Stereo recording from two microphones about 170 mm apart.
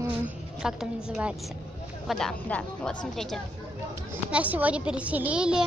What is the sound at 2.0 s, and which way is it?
Speech, centre (ahead or behind).